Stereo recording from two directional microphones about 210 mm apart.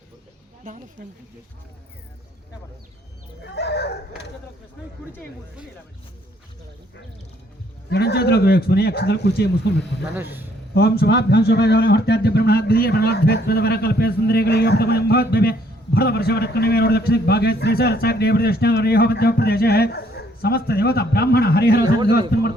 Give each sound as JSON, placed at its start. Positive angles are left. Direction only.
{"t": 3.4, "sound": "speech", "side_deg": 55}
{"t": 7.9, "sound": "speech", "side_deg": 50}
{"t": 10.8, "sound": "speech", "side_deg": 50}